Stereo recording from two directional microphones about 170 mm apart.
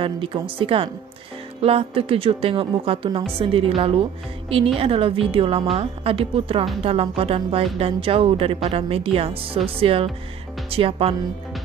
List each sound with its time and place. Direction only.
0.0 s a woman's voice: 30° right (ahead or behind)